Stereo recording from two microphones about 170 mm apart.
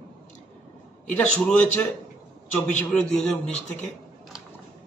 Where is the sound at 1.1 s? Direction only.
10° left (ahead or behind).